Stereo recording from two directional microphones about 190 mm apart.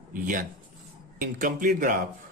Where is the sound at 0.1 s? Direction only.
45° right (ahead or behind).